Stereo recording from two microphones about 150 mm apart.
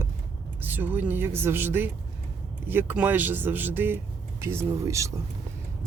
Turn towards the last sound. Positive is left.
turn(degrees=-20)  # may be behind; listen again after turning